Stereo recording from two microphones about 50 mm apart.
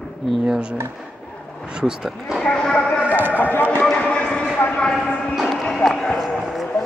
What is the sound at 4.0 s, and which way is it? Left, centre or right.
Clip-clop, left.